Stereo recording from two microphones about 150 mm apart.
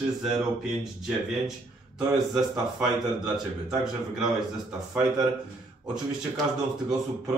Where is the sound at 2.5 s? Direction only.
5° right (ahead or behind).